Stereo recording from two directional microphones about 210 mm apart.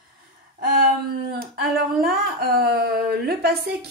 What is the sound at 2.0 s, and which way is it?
A woman's voice, 45° right (ahead or behind).